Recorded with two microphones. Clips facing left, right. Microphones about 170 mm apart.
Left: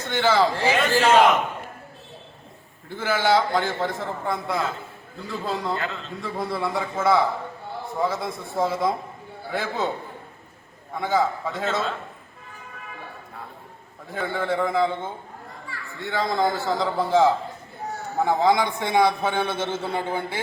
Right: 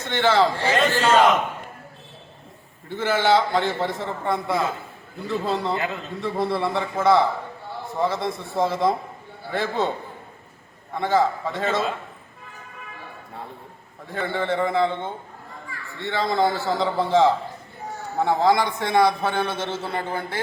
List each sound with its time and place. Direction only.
0.1 s a man's voice: centre (ahead or behind)
2.9 s a man's voice: centre (ahead or behind)
5.7 s a man's voice: 15° right (ahead or behind)
6.2 s a man's voice: centre (ahead or behind)
10.9 s a man's voice: centre (ahead or behind)
14.1 s a man's voice: centre (ahead or behind)